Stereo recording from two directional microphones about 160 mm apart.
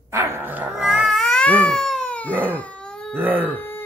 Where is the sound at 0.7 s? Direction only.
5° right (ahead or behind).